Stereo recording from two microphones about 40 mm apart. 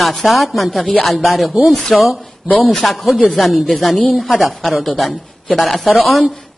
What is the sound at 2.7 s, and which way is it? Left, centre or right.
Speech, centre.